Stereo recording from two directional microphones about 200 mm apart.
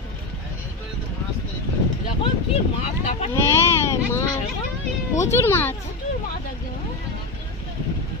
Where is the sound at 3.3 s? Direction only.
15° left (ahead or behind).